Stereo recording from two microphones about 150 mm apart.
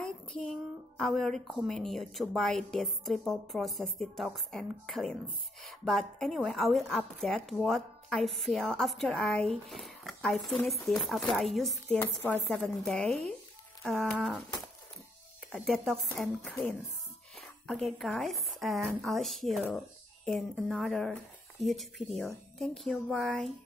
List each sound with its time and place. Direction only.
0.0 s a woman's voice: 5° left (ahead or behind)
15.5 s a woman's voice: centre (ahead or behind)